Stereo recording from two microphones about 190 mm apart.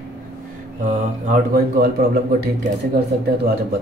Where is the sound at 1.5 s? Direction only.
55° right (ahead or behind).